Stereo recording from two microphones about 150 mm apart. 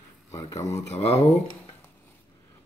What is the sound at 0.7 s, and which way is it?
Speech, 45° left (ahead or behind).